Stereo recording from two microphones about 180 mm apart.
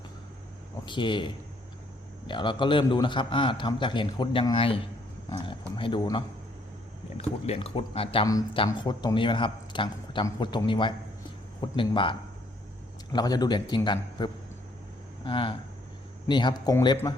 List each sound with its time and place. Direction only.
0.9 s speech: 25° left (ahead or behind)
13.1 s speech: 20° left (ahead or behind)